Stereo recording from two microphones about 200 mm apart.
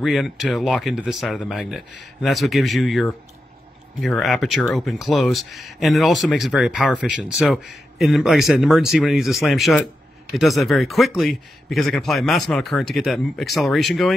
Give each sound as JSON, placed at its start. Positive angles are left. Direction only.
{"t": 0.0, "sound": "speech", "side_deg": 0}